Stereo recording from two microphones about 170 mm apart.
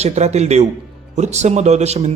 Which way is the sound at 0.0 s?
40° right (ahead or behind).